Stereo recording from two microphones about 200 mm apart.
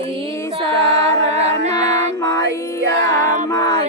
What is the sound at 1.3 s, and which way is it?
Music, 30° right (ahead or behind).